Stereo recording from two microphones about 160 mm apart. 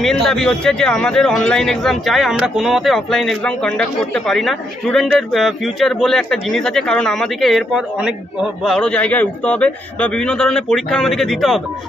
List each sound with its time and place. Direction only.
0.0 s a man's voice: 5° left (ahead or behind)